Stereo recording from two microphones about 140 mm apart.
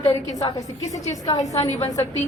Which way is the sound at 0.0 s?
35° left (ahead or behind).